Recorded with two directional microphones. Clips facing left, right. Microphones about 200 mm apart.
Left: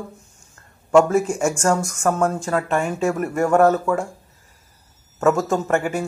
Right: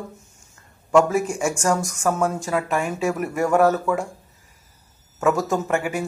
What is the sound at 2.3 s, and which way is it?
Speech, 15° right (ahead or behind).